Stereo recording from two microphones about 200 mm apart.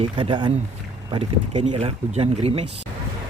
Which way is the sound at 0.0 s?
25° right (ahead or behind).